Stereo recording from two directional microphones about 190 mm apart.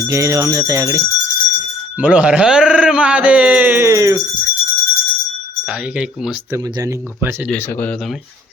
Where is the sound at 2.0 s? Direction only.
5° right (ahead or behind).